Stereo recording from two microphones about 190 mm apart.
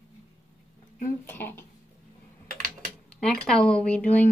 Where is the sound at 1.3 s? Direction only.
10° left (ahead or behind).